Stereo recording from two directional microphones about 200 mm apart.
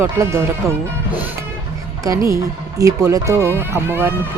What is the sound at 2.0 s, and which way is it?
Speech, 15° right (ahead or behind).